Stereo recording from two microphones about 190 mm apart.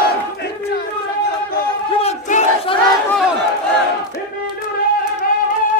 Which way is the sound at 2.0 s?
30° left (ahead or behind).